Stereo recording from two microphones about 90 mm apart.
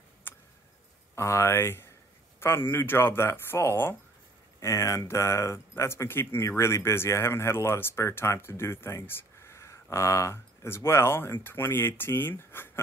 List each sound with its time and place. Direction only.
1.1 s speech: 30° left (ahead or behind)